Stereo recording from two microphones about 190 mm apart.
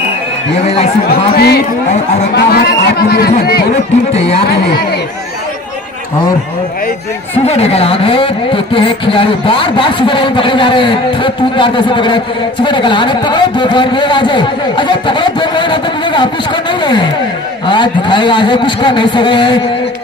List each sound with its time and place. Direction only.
1.3 s speech: 55° left (ahead or behind)
4.1 s speech: 35° left (ahead or behind)
7.3 s speech: 35° left (ahead or behind)